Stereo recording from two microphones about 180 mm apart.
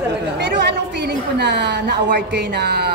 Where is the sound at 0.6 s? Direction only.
65° right (ahead or behind).